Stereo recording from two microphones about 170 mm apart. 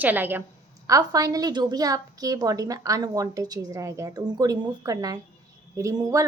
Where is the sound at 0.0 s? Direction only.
10° right (ahead or behind).